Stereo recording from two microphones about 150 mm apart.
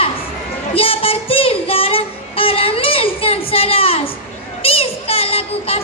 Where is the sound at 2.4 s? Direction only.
40° left (ahead or behind).